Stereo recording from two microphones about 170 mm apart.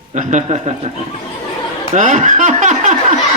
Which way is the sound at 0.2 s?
45° right (ahead or behind).